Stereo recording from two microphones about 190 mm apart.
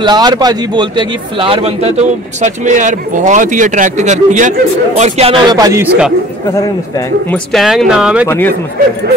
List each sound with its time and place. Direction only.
0.0 s a man's voice: 20° right (ahead or behind)
7.2 s speech: centre (ahead or behind)